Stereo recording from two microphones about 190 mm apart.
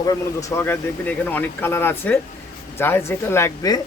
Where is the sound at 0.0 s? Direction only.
20° left (ahead or behind).